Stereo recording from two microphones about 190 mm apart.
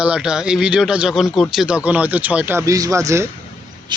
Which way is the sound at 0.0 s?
5° right (ahead or behind).